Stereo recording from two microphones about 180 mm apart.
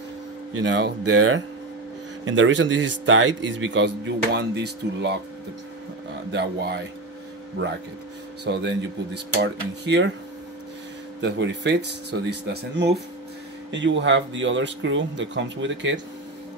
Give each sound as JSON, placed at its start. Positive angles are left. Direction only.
{"t": 0.7, "sound": "speech", "side_deg": -80}
{"t": 6.3, "sound": "speech", "side_deg": -65}
{"t": 8.5, "sound": "speech", "side_deg": -75}
{"t": 11.1, "sound": "speech", "side_deg": -80}
{"t": 13.7, "sound": "speech", "side_deg": -90}